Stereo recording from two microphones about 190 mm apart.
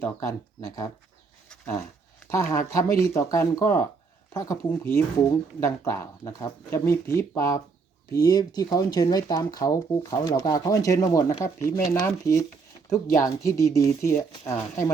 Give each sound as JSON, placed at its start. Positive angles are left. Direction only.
{"t": 0.0, "sound": "speech", "side_deg": 15}
{"t": 1.5, "sound": "a sound", "side_deg": 5}
{"t": 2.3, "sound": "speech", "side_deg": 15}